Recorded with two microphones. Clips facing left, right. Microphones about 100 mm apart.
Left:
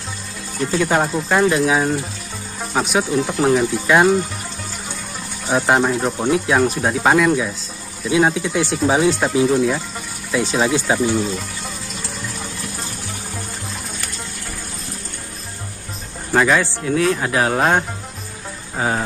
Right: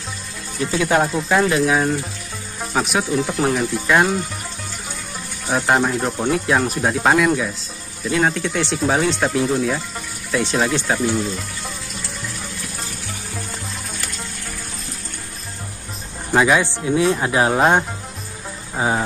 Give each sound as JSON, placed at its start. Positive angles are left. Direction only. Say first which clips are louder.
{"t": 0.6, "sound": "speech", "louder": "even", "side_deg": 0}
{"t": 5.5, "sound": "speech", "louder": "left 2 dB", "side_deg": 0}
{"t": 16.3, "sound": "speech", "louder": "even", "side_deg": -10}
{"t": 17.6, "sound": "speech", "louder": "right 2 dB", "side_deg": -5}
{"t": 18.8, "sound": "music", "louder": "right 1 dB", "side_deg": -10}